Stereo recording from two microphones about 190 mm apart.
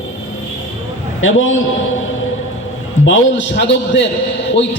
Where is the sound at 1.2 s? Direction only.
90° left.